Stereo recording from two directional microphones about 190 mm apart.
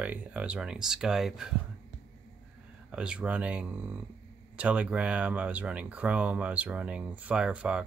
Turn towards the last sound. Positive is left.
turn(degrees=-5)  # may be behind; listen again after turning